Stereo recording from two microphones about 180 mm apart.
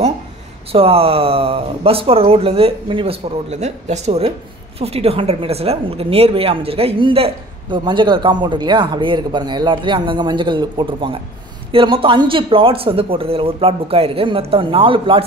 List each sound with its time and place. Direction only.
0.7 s a woman's voice: 30° right (ahead or behind)